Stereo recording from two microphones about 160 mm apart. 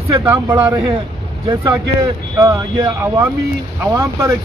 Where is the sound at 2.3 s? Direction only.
20° right (ahead or behind).